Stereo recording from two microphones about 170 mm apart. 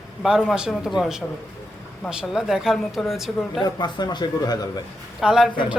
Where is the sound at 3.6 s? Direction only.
25° left (ahead or behind).